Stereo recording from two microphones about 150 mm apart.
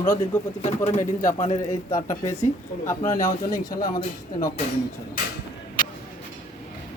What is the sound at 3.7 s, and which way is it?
Speech, 25° left (ahead or behind).